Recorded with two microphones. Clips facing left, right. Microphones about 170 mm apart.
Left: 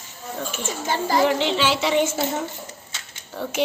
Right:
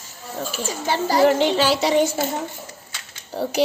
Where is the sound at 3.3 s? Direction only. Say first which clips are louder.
Right 5 dB; 35° right (ahead or behind).